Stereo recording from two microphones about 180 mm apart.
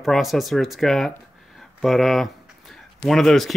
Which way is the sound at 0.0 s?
Centre (ahead or behind).